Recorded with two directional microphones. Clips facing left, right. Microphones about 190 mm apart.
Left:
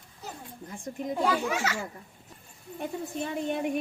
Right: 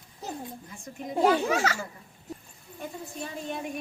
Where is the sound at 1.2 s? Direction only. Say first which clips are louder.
Right 6 dB; 40° right (ahead or behind).